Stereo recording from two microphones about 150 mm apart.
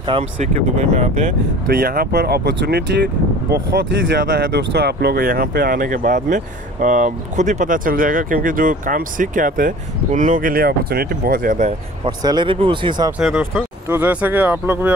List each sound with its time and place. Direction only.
0.4 s speech: 50° right (ahead or behind)
1.7 s speech: 85° right; by 11.7 s 60° right (ahead or behind)
12.0 s speech: 30° right (ahead or behind)
13.4 s speech: 15° right (ahead or behind)